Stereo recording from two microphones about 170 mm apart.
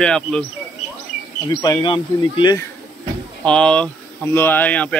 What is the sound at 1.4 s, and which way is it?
Speech, 25° left (ahead or behind).